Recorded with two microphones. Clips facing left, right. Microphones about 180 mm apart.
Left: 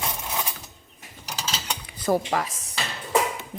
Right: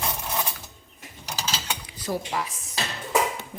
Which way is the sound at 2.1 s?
55° left (ahead or behind).